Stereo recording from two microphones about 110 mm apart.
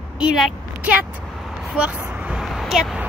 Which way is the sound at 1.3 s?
Centre (ahead or behind).